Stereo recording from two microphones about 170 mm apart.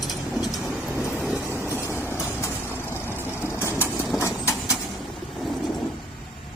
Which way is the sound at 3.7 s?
10° right (ahead or behind).